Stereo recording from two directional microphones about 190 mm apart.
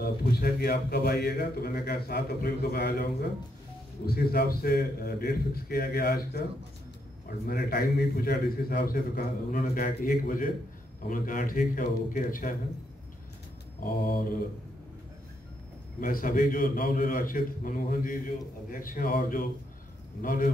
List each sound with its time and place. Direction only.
0.0 s a man's voice: 55° left (ahead or behind)
7.4 s a man's voice: 50° left (ahead or behind)
16.0 s a man's voice: 50° left (ahead or behind)